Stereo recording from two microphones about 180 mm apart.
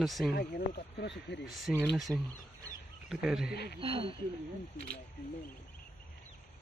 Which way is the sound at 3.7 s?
30° right (ahead or behind).